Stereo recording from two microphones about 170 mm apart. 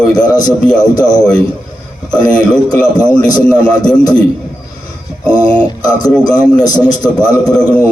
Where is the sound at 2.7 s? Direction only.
20° left (ahead or behind).